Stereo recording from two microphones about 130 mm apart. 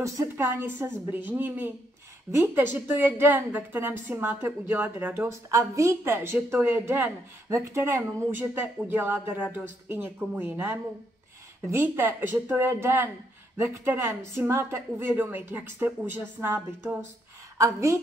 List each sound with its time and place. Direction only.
0.0 s a woman's voice: 20° right (ahead or behind)